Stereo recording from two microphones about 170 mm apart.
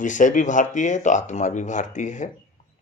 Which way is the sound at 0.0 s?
50° left (ahead or behind).